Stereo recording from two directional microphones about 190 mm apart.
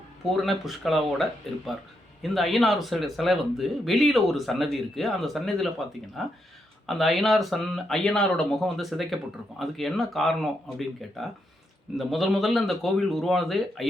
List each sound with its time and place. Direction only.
0.4 s speech: centre (ahead or behind)